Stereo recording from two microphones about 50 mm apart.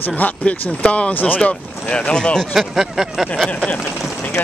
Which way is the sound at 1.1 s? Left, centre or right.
Left.